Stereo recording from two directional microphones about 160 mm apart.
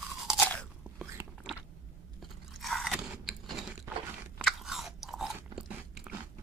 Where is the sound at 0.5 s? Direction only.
5° left (ahead or behind).